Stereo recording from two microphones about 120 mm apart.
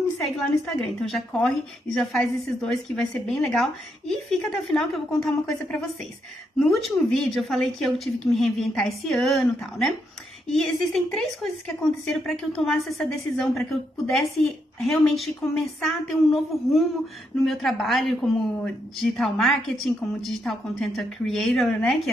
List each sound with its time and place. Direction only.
1.0 s speech: 5° left (ahead or behind)